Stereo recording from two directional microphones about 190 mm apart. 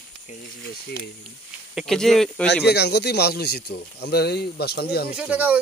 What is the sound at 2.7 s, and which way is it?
Speech, 60° left (ahead or behind).